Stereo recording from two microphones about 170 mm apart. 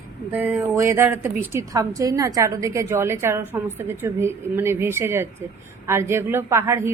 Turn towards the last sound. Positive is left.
turn(degrees=-15)  # may be behind; listen again after turning